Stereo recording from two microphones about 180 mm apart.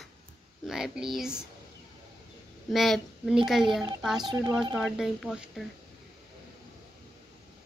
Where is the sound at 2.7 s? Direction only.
Centre (ahead or behind).